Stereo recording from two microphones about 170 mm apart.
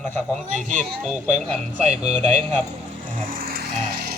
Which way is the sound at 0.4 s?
45° right (ahead or behind).